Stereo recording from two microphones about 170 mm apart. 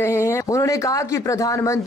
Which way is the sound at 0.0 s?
15° left (ahead or behind).